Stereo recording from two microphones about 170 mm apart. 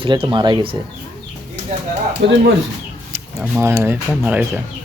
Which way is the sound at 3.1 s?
15° right (ahead or behind).